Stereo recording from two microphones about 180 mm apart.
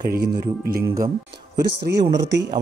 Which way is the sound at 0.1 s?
60° right (ahead or behind).